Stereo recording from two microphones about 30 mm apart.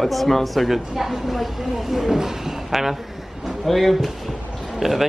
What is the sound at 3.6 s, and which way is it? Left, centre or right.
Speech, centre.